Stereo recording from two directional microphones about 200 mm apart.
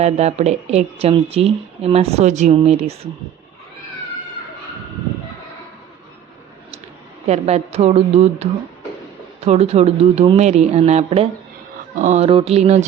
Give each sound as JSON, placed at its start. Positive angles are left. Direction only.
{"t": 0.0, "sound": "speech", "side_deg": -35}
{"t": 7.3, "sound": "speech", "side_deg": -30}